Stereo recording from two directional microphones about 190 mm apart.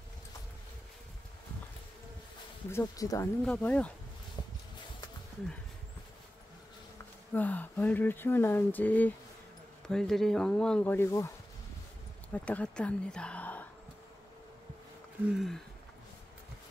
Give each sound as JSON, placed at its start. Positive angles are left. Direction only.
{"t": 2.7, "sound": "speech", "side_deg": 15}
{"t": 3.4, "sound": "speech", "side_deg": 5}
{"t": 7.3, "sound": "a woman's voice", "side_deg": 10}
{"t": 15.3, "sound": "speech", "side_deg": 0}